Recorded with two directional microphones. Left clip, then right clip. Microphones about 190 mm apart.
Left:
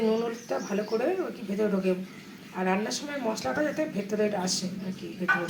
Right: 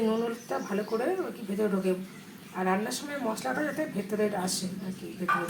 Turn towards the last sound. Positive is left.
turn(degrees=-5)  # may be behind; listen again after turning